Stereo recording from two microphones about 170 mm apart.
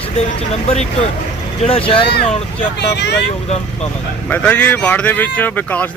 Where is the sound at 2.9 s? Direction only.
80° left.